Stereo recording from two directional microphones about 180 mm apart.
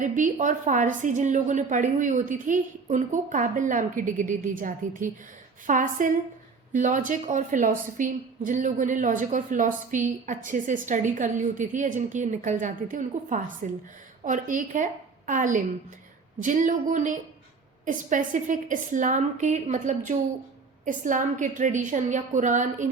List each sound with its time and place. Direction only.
0.0 s a woman's voice: 45° right (ahead or behind)